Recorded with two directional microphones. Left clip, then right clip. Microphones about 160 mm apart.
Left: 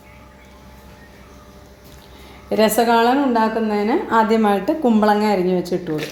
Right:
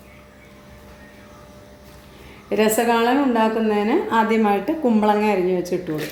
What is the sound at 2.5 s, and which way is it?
A woman's voice, 40° left (ahead or behind).